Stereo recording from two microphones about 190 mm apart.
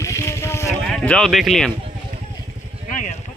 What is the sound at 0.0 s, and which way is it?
Vehicle, 15° left (ahead or behind).